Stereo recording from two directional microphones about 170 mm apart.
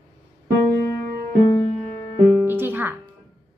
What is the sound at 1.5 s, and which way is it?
Music, 15° left (ahead or behind).